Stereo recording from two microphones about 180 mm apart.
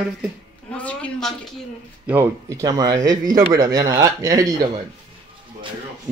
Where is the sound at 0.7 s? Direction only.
5° left (ahead or behind).